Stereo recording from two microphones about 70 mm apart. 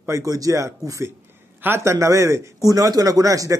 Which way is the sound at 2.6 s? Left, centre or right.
Right.